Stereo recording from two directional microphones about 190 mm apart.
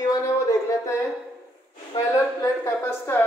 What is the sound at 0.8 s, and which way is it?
A woman's voice, 15° left (ahead or behind).